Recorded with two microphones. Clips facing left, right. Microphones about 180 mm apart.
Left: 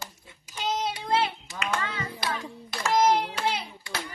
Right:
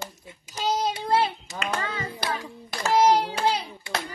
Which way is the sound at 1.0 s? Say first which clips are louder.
Right 2 dB; 35° right (ahead or behind).